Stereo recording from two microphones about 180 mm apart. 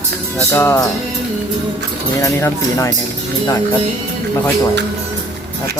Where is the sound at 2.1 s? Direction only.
15° left (ahead or behind).